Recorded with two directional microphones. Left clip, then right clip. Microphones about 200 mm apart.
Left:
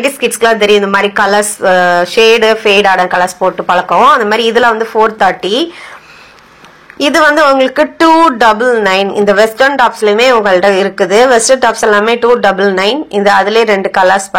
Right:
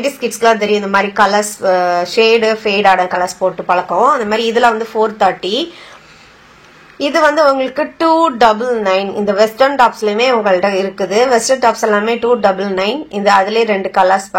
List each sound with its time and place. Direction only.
0.0 s speech: 20° left (ahead or behind)
7.0 s speech: 20° left (ahead or behind)